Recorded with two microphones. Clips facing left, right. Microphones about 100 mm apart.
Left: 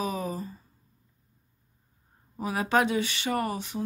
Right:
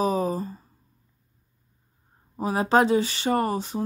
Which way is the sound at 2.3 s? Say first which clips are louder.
Right 5 dB; 30° right (ahead or behind).